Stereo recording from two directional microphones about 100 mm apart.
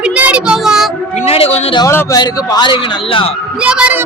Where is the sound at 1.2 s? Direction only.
85° left.